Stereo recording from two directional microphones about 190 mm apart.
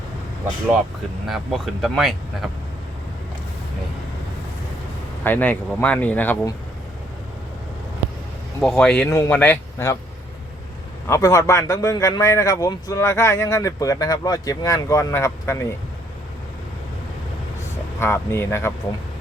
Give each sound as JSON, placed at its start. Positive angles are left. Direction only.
{"t": 1.3, "sound": "speech", "side_deg": 0}
{"t": 5.2, "sound": "a man's voice", "side_deg": 10}
{"t": 8.6, "sound": "a man's voice", "side_deg": 5}
{"t": 11.1, "sound": "a man's voice", "side_deg": 15}
{"t": 18.0, "sound": "a man's voice", "side_deg": 15}